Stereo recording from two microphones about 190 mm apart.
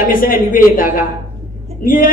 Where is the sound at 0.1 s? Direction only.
45° left (ahead or behind).